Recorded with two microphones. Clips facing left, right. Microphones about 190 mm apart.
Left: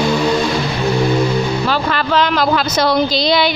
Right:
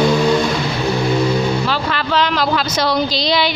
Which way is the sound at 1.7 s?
45° left (ahead or behind).